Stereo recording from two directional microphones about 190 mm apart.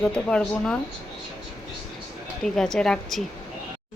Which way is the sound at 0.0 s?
5° left (ahead or behind).